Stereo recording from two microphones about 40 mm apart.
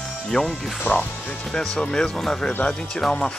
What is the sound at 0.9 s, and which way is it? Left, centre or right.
Speech, left.